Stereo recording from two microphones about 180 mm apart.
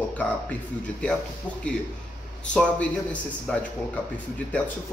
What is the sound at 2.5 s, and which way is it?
A man's voice, 5° left (ahead or behind).